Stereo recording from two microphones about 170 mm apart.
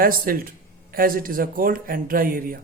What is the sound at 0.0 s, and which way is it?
A man's voice, 60° right (ahead or behind).